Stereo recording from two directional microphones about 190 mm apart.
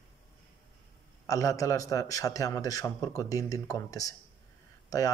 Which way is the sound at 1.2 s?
15° left (ahead or behind).